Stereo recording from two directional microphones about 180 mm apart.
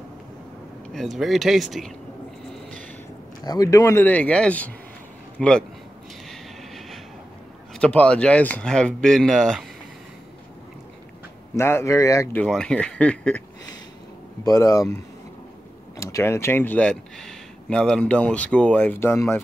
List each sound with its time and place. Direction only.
0.9 s speech: centre (ahead or behind)
3.4 s speech: 20° left (ahead or behind); by 5.5 s centre (ahead or behind)
7.8 s speech: 5° left (ahead or behind)
11.5 s speech: 15° left (ahead or behind)
14.4 s speech: 20° left (ahead or behind)
16.0 s speech: 15° left (ahead or behind)